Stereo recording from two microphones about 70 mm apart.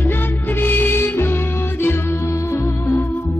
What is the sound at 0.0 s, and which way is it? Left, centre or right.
Music, left.